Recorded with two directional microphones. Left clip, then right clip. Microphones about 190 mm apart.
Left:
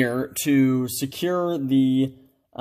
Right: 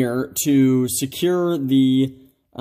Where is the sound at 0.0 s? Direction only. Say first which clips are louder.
Right 2 dB; 15° right (ahead or behind).